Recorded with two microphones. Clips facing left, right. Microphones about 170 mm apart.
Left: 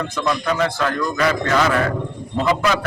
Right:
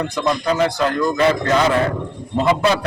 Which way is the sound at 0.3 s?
25° right (ahead or behind).